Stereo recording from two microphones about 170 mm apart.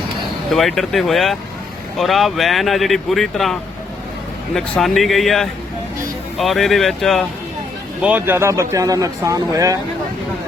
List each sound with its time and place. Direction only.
0.5 s speech: centre (ahead or behind)
8.0 s speech: 10° right (ahead or behind)